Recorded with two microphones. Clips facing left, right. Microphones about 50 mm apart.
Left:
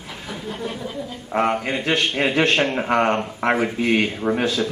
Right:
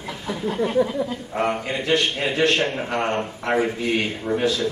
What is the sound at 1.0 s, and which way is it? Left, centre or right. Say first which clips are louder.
Speech: right 6 dB; right.